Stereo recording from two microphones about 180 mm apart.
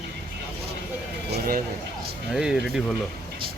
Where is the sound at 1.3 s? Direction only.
55° right (ahead or behind).